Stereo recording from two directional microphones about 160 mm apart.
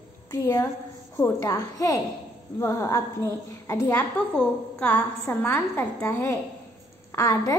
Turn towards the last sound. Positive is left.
turn(degrees=20)  # may be behind; listen again after turning